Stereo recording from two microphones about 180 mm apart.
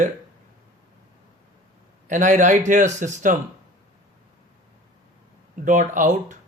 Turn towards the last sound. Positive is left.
turn(degrees=-45)  # may be behind; listen again after turning